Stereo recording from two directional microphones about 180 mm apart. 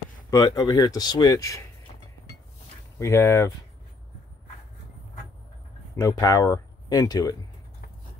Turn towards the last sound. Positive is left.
turn(degrees=20)  # may be behind; listen again after turning